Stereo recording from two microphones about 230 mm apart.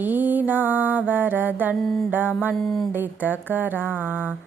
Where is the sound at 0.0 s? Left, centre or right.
Centre.